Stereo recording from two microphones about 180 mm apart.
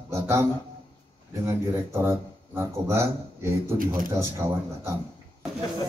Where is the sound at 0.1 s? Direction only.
15° right (ahead or behind).